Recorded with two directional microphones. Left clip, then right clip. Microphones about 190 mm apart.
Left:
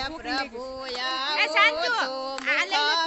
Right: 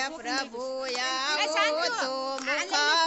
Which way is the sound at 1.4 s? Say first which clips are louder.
Left 7 dB; 35° left (ahead or behind).